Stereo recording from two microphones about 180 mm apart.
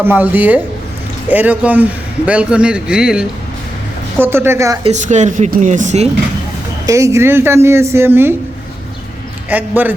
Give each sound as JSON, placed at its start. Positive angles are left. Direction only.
{"t": 0.0, "sound": "a man's voice", "side_deg": -10}
{"t": 4.8, "sound": "a woman's voice", "side_deg": -40}
{"t": 6.8, "sound": "a man's voice", "side_deg": -15}
{"t": 9.5, "sound": "a man's voice", "side_deg": -10}